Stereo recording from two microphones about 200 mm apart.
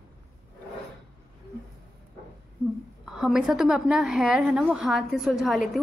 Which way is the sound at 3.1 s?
Centre (ahead or behind).